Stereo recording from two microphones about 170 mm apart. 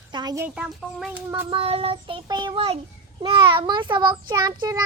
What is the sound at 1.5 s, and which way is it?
Child singing, 35° right (ahead or behind).